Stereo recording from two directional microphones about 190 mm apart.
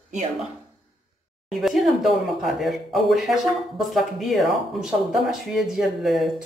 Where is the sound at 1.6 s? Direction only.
Centre (ahead or behind).